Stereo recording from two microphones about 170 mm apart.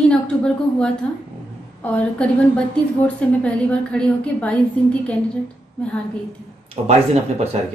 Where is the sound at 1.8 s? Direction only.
5° left (ahead or behind).